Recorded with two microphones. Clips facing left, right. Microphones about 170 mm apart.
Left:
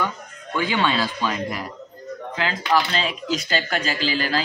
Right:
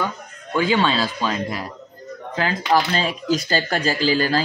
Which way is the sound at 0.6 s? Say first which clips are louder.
Right 3 dB; 20° right (ahead or behind).